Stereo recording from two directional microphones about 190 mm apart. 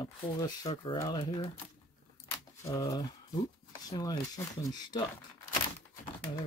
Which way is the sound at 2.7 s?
15° left (ahead or behind).